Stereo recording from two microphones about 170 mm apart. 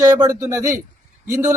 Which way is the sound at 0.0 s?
20° right (ahead or behind).